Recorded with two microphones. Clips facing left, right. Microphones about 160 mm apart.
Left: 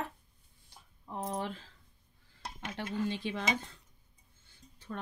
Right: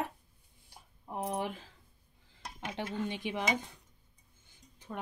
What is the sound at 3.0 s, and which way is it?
Speech, 15° right (ahead or behind).